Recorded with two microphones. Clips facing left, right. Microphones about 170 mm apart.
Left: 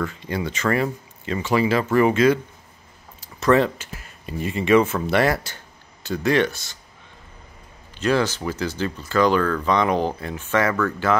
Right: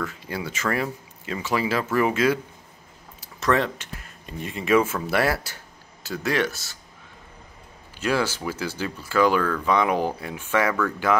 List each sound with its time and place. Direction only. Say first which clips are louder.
0.0 s speech: left 4 dB; 5° right (ahead or behind)
8.0 s speech: left 3 dB; 10° right (ahead or behind)